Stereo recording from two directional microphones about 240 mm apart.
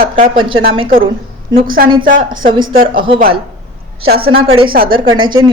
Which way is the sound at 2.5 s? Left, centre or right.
Right.